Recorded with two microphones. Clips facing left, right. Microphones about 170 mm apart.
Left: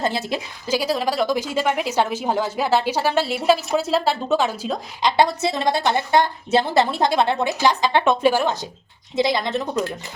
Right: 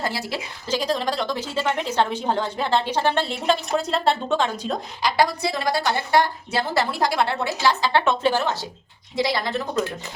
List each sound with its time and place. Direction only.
0.0 s a woman's voice: 20° left (ahead or behind)
0.7 s a woman's voice: 10° left (ahead or behind)
5.0 s a woman's voice: 25° left (ahead or behind)